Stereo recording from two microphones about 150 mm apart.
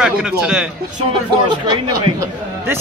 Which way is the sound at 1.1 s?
30° right (ahead or behind).